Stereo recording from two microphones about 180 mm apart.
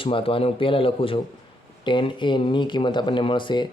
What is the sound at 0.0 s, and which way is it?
Speech, 30° left (ahead or behind).